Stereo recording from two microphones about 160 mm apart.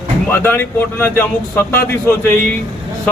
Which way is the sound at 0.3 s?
15° left (ahead or behind).